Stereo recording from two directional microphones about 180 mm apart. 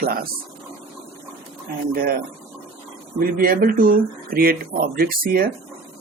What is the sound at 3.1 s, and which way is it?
Speech, 50° right (ahead or behind).